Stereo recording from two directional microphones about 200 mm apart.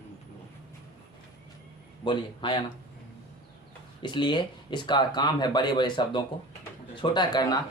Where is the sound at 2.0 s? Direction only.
25° left (ahead or behind).